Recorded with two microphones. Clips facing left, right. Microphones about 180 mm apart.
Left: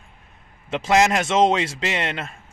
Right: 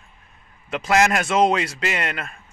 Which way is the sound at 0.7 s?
25° left (ahead or behind).